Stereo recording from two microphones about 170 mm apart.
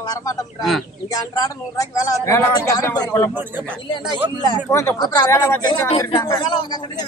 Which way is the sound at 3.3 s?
10° right (ahead or behind).